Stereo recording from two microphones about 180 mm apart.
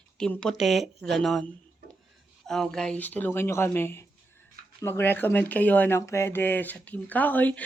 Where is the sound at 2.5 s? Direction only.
5° left (ahead or behind).